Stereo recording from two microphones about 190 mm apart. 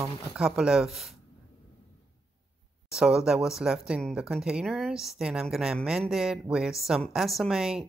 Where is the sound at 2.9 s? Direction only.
5° right (ahead or behind).